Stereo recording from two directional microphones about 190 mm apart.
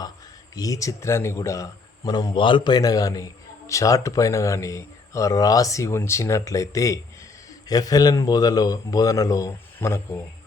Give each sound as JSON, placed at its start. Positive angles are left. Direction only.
{"t": 0.5, "sound": "a man's voice", "side_deg": 20}